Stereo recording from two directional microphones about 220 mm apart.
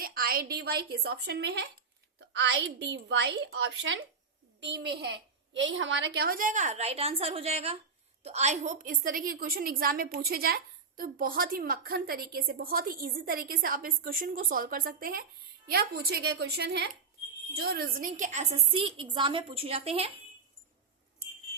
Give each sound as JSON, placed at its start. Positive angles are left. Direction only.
{"t": 0.0, "sound": "a woman's voice", "side_deg": -40}